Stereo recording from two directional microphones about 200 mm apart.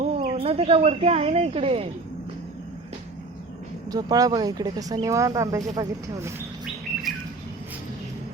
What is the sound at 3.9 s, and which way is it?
Speech, 20° right (ahead or behind).